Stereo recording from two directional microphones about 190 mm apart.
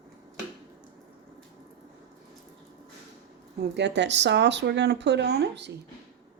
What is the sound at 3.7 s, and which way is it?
Speech, 65° right (ahead or behind).